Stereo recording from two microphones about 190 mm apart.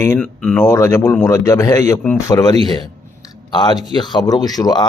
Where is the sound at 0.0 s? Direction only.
10° left (ahead or behind).